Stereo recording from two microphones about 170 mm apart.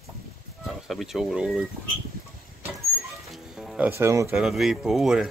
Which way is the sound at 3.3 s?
Centre (ahead or behind).